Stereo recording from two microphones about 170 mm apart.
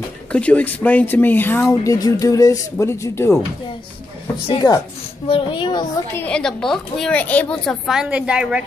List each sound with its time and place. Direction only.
0.3 s speech: 5° left (ahead or behind)
4.5 s a child's voice: 25° left (ahead or behind)
6.1 s a woman's voice: 5° left (ahead or behind)